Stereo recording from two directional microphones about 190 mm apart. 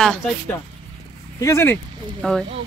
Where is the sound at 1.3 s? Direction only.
15° left (ahead or behind).